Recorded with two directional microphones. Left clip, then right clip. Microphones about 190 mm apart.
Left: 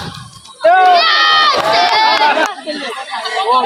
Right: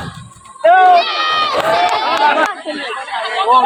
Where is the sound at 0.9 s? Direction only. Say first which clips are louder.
Left 4 dB; 25° left (ahead or behind).